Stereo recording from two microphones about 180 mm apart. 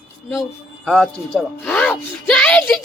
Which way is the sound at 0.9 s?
Centre (ahead or behind).